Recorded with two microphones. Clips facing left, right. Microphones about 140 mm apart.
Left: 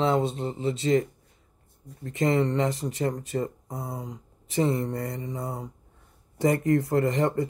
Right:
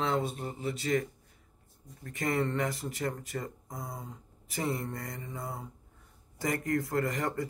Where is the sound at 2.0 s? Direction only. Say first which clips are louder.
Left 7 dB; 25° left (ahead or behind).